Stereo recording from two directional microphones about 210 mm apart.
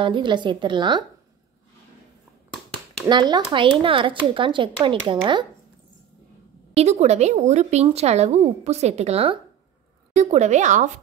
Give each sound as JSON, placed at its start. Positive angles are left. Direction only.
{"t": 0.0, "sound": "speech", "side_deg": -20}
{"t": 2.5, "sound": "a sound", "side_deg": 0}
{"t": 3.1, "sound": "speech", "side_deg": -20}
{"t": 6.7, "sound": "speech", "side_deg": -30}